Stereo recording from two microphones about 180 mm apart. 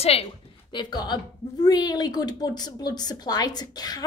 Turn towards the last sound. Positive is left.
turn(degrees=20)  # may be behind; listen again after turning